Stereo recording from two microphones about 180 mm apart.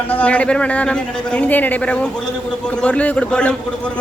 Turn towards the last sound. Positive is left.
turn(degrees=5)  # may be behind; listen again after turning